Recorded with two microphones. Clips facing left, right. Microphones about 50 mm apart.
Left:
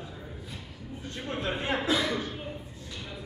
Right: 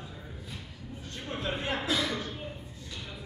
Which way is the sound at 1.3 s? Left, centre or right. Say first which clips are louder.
Left 2 dB; centre.